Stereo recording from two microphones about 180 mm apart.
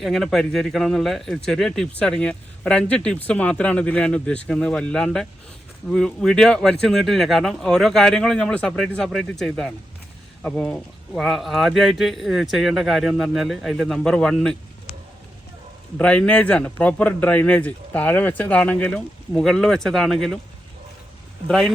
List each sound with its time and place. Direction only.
0.0 s speech: centre (ahead or behind)
16.0 s speech: 5° left (ahead or behind)
21.4 s speech: centre (ahead or behind)